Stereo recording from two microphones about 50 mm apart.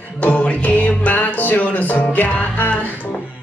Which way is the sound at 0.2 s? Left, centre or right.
Left.